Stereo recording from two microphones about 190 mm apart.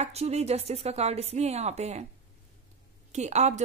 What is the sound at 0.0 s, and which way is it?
A woman's voice, 35° right (ahead or behind).